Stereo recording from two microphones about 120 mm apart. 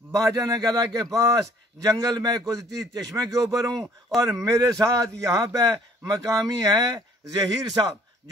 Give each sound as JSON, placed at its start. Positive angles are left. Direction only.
{"t": 0.1, "sound": "a man's voice", "side_deg": -30}